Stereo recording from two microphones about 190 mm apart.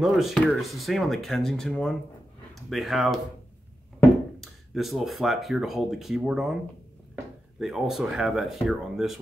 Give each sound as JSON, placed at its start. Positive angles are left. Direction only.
{"t": 0.0, "sound": "speech", "side_deg": 0}
{"t": 4.4, "sound": "speech", "side_deg": 0}